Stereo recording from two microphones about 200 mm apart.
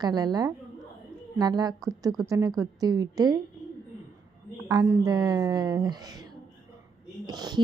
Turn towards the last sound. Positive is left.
turn(degrees=-20)  # may be behind; listen again after turning